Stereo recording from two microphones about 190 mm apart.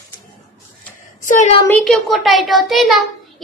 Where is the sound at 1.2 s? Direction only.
40° left (ahead or behind).